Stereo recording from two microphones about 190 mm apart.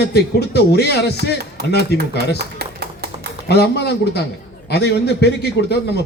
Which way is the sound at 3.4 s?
60° left (ahead or behind).